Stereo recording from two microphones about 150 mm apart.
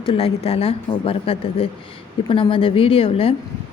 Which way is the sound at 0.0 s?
40° left (ahead or behind).